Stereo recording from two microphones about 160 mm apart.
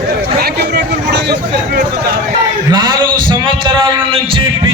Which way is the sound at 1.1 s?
90° right.